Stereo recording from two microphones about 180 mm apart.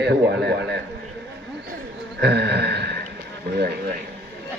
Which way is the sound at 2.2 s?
70° right (ahead or behind).